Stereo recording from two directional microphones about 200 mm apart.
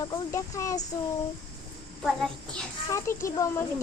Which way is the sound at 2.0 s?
Centre (ahead or behind).